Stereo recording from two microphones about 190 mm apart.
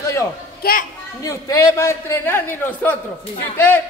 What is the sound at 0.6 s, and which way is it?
Speech, 55° left (ahead or behind).